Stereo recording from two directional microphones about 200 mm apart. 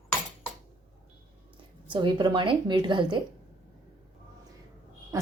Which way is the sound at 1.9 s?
25° right (ahead or behind).